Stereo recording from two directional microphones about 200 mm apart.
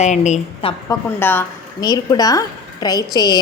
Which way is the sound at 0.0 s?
35° left (ahead or behind).